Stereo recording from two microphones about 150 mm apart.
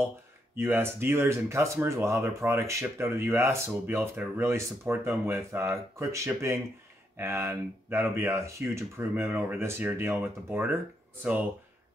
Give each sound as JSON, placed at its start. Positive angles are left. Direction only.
{"t": 0.6, "sound": "speech", "side_deg": -15}